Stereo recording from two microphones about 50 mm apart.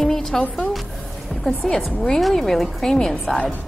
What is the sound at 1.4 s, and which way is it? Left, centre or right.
A woman's voice, centre.